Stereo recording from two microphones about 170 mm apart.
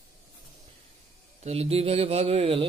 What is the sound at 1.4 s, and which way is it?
Speech, 35° right (ahead or behind).